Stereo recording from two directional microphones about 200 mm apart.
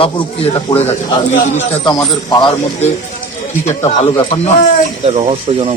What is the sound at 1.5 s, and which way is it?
Speech, 25° left (ahead or behind).